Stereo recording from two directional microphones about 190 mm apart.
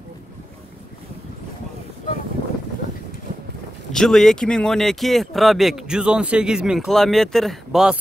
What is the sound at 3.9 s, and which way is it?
Speech, centre (ahead or behind).